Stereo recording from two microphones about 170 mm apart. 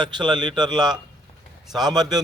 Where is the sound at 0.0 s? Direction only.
25° right (ahead or behind).